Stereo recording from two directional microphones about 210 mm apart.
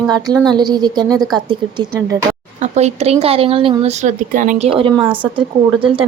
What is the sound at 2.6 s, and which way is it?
A woman's voice, 30° right (ahead or behind).